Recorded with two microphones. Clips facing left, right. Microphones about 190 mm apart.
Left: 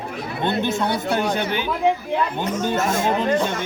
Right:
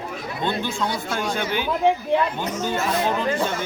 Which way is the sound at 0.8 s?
60° left (ahead or behind).